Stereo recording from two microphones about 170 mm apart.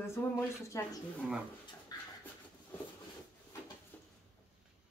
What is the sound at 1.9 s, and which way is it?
Dog, 25° left (ahead or behind).